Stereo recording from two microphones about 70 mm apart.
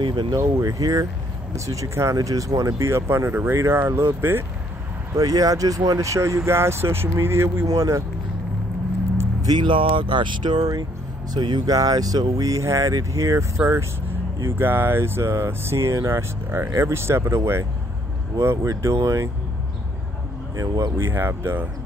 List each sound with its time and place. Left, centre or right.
0.1 s speech: right
0.4 s speech: right
5.1 s speech: right
7.6 s speech: right
9.4 s speech: right
13.6 s speech: right
20.5 s speech: right
21.0 s speech: right